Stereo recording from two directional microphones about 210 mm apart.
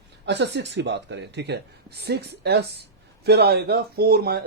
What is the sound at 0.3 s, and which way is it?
Speech, 55° right (ahead or behind).